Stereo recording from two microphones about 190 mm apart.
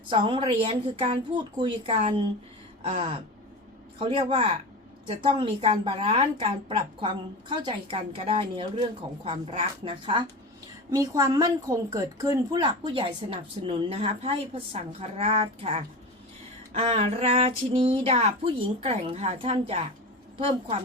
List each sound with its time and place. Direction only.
0.1 s a woman's voice: 25° right (ahead or behind)